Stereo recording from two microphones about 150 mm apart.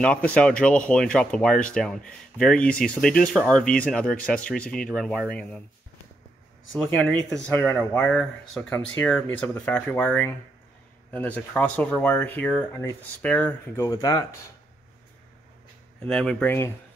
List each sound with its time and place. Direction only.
0.0 s speech: 10° left (ahead or behind)
6.7 s speech: 10° left (ahead or behind)
13.8 s speech: 25° left (ahead or behind)
16.1 s speech: 5° left (ahead or behind)